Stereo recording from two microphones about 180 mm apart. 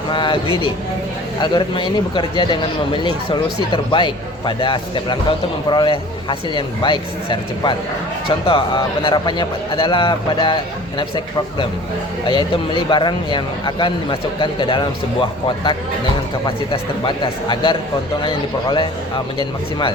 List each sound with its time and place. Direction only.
0.1 s a man's voice: 30° left (ahead or behind)
16.7 s speech: 30° left (ahead or behind)